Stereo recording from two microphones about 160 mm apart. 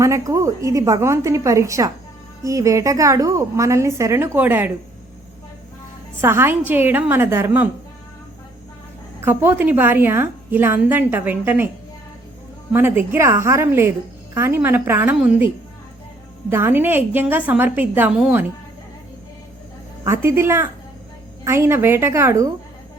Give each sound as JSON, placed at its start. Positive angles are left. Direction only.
{"t": 0.0, "sound": "a woman's voice", "side_deg": -20}
{"t": 6.2, "sound": "a woman's voice", "side_deg": -15}
{"t": 9.2, "sound": "a woman's voice", "side_deg": -15}
{"t": 12.7, "sound": "a woman's voice", "side_deg": -15}
{"t": 20.1, "sound": "a woman's voice", "side_deg": -15}